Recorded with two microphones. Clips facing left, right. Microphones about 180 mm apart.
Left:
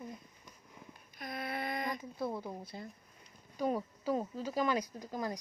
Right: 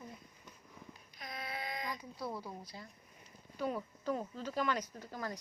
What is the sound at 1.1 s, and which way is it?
Speech, 55° left (ahead or behind).